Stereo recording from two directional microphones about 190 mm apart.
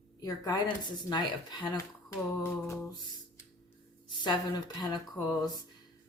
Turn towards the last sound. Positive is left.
turn(degrees=20)  # may be behind; listen again after turning